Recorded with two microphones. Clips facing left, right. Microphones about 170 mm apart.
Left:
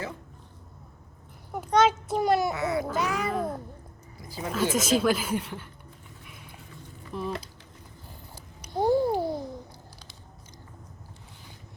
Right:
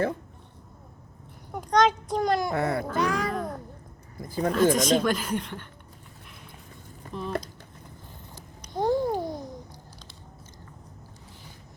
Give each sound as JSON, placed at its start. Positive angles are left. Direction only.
{"t": 1.5, "sound": "a child's voice", "side_deg": 5}
{"t": 2.5, "sound": "speech", "side_deg": -55}
{"t": 2.8, "sound": "meow", "side_deg": 5}
{"t": 4.2, "sound": "speech", "side_deg": -50}
{"t": 4.5, "sound": "speech", "side_deg": 5}
{"t": 7.1, "sound": "speech", "side_deg": 5}
{"t": 8.4, "sound": "babbling", "side_deg": 10}